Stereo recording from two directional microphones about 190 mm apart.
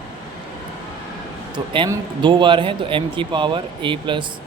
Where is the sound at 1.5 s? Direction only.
25° right (ahead or behind).